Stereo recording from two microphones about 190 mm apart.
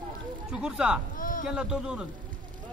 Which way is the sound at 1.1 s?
45° left (ahead or behind).